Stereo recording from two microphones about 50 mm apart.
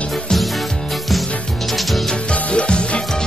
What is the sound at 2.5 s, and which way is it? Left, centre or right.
Music, left.